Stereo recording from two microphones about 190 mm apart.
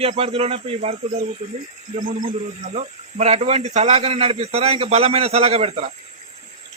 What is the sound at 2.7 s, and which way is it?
Speech, 35° right (ahead or behind).